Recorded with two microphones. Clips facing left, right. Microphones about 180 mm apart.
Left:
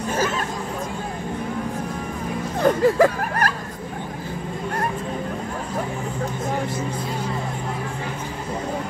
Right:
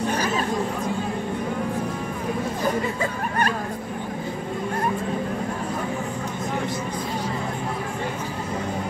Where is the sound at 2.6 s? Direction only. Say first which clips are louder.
Left 11 dB; 75° left (ahead or behind).